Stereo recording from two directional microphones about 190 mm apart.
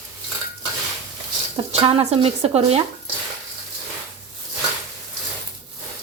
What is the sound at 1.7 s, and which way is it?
Speech, 30° right (ahead or behind).